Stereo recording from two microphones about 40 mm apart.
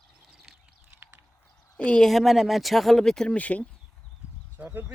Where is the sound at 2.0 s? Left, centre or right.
Centre.